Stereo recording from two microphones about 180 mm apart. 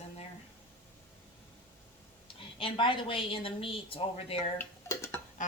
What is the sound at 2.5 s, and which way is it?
A woman's voice, 30° left (ahead or behind).